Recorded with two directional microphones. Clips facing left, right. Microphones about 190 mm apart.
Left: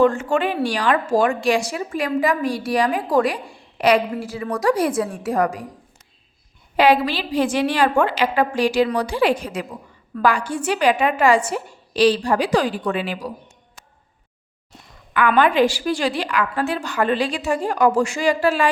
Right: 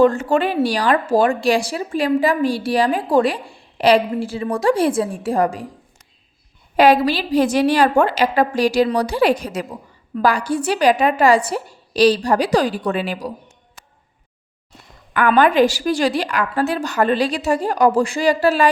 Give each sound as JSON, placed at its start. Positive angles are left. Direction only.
{"t": 0.0, "sound": "a woman's voice", "side_deg": -35}
{"t": 6.7, "sound": "speech", "side_deg": -45}
{"t": 15.4, "sound": "speech", "side_deg": -40}